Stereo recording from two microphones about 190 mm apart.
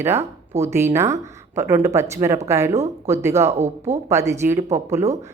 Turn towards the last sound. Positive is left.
turn(degrees=-15)  # may be behind; listen again after turning